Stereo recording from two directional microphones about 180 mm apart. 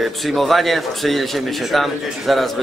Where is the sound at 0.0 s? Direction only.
Centre (ahead or behind).